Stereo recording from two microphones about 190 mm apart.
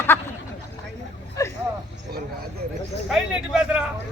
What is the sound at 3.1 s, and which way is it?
Speech, 5° right (ahead or behind).